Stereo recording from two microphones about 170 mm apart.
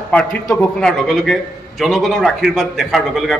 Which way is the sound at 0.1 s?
5° left (ahead or behind).